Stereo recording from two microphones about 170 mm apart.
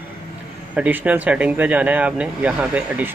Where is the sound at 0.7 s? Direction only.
10° right (ahead or behind).